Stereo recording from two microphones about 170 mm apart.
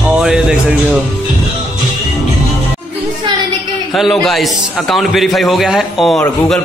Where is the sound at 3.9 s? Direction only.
Centre (ahead or behind).